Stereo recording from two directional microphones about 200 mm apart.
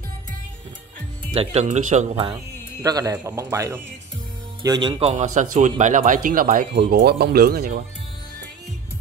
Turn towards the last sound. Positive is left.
turn(degrees=-50)  # may be behind; listen again after turning